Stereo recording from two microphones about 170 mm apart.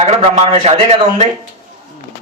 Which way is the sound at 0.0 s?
35° right (ahead or behind).